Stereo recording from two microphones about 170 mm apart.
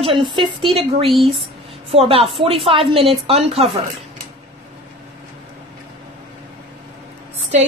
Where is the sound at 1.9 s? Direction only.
35° right (ahead or behind).